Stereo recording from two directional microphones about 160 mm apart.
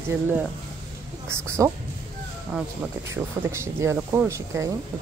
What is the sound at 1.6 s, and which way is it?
Speech, 20° right (ahead or behind).